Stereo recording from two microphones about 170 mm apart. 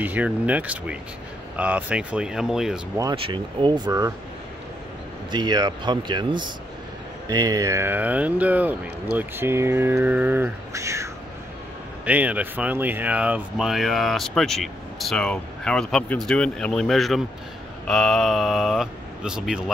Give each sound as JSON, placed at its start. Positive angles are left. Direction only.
{"t": 0.0, "sound": "speech", "side_deg": -10}
{"t": 3.2, "sound": "speech", "side_deg": -30}
{"t": 5.3, "sound": "speech", "side_deg": -25}